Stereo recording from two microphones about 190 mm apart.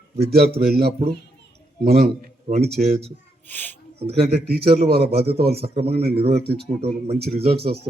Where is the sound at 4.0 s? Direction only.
30° right (ahead or behind).